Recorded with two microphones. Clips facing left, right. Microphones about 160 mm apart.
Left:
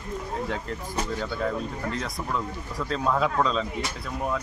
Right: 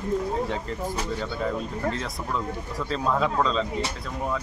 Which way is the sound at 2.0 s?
Centre (ahead or behind).